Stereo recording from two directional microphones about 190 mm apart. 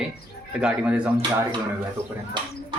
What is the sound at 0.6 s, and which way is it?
Speech, 5° right (ahead or behind).